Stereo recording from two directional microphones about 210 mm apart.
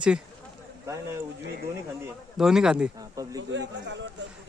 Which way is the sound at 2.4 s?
Centre (ahead or behind).